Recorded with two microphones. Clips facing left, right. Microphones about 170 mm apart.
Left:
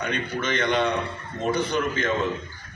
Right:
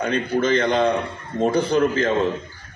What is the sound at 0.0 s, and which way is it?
A man's voice, 30° right (ahead or behind).